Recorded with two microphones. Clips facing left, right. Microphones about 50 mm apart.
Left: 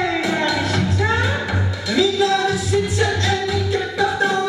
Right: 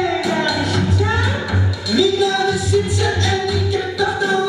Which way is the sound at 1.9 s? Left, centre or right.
Left.